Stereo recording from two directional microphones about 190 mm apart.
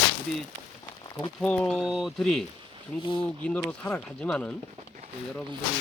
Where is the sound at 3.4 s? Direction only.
5° left (ahead or behind).